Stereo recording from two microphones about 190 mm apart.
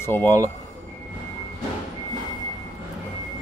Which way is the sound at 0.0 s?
10° left (ahead or behind).